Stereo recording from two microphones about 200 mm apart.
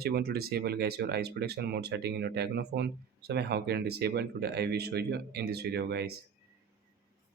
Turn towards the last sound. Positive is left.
turn(degrees=-55)  # may be behind; listen again after turning